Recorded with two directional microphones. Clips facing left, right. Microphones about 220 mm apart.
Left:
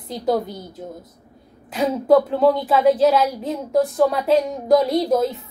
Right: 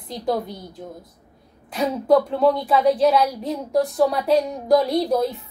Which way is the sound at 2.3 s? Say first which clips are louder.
Left 2 dB; 5° left (ahead or behind).